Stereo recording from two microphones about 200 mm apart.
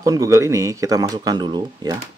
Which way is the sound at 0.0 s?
15° right (ahead or behind).